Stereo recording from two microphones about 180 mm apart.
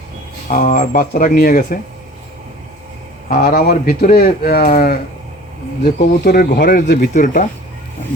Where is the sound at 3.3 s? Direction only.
55° left (ahead or behind).